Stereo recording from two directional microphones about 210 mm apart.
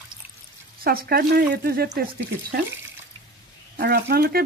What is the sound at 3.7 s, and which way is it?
Speech, 50° right (ahead or behind).